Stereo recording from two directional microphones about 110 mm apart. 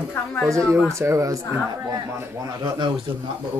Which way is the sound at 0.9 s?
25° right (ahead or behind).